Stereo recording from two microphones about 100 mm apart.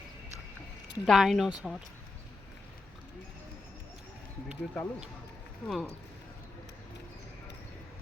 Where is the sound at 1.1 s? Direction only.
Centre (ahead or behind).